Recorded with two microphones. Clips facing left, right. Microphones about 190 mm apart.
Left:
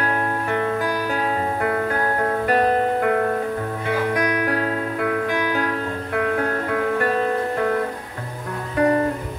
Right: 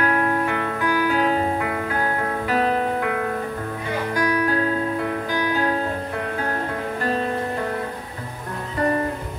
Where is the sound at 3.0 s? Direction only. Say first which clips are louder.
Left 5 dB; 50° left (ahead or behind).